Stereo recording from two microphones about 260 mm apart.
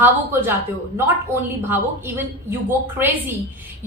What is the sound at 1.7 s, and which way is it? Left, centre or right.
A woman's voice, centre.